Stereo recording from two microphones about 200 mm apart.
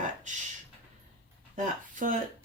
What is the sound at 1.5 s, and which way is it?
Speech, 40° right (ahead or behind).